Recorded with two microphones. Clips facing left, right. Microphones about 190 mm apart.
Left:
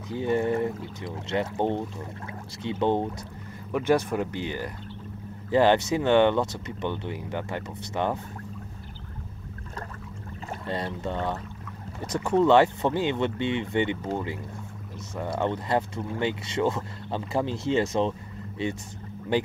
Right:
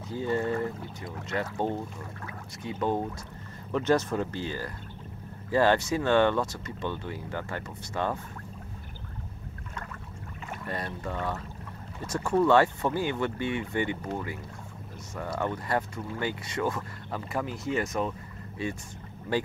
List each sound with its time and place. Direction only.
0.1 s speech: 20° left (ahead or behind)
3.7 s speech: 10° left (ahead or behind)
10.5 s speech: 25° left (ahead or behind)
19.3 s speech: 20° left (ahead or behind)